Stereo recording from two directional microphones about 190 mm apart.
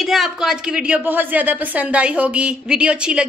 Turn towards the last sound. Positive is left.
turn(degrees=-5)  # may be behind; listen again after turning